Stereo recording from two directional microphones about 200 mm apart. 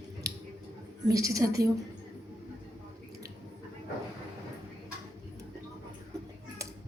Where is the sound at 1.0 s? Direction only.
15° right (ahead or behind).